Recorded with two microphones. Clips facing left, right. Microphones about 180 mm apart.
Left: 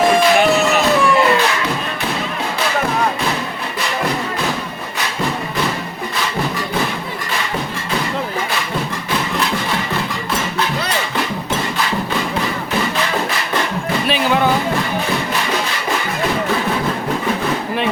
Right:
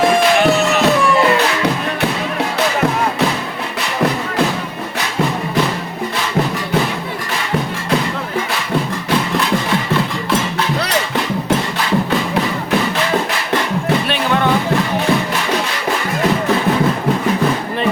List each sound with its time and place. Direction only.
0.0 s music: centre (ahead or behind)
14.1 s music: 5° left (ahead or behind)